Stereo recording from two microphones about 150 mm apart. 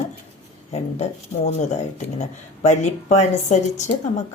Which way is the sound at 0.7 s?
45° left (ahead or behind).